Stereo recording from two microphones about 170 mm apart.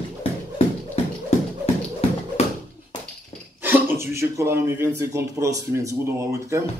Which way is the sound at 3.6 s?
15° right (ahead or behind).